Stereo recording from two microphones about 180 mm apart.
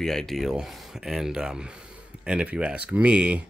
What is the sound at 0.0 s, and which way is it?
Speech, 5° left (ahead or behind).